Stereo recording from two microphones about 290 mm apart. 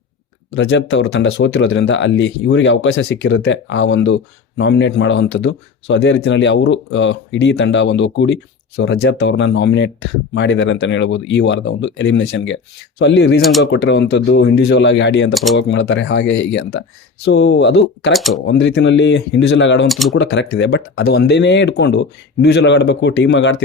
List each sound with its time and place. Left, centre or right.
0.5 s speech: left
18.1 s speech: centre
18.4 s speech: left
19.9 s speech: centre
20.1 s speech: left